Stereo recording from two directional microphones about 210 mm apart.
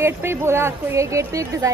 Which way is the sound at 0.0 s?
10° right (ahead or behind).